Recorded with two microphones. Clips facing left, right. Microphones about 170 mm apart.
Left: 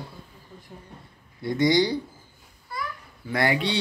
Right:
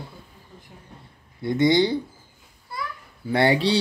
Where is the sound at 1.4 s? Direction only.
25° right (ahead or behind).